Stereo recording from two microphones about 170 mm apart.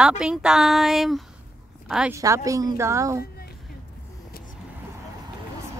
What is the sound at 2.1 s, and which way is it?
A woman's voice, 20° right (ahead or behind).